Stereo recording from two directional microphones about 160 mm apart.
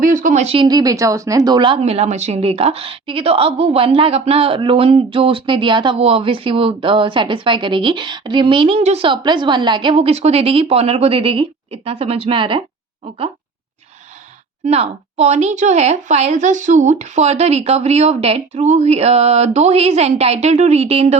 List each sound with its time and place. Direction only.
0.0 s speech: 55° right (ahead or behind); by 12.6 s 30° right (ahead or behind)
14.6 s a woman's voice: 40° right (ahead or behind)